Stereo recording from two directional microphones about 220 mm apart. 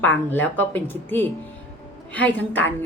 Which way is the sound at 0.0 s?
10° left (ahead or behind).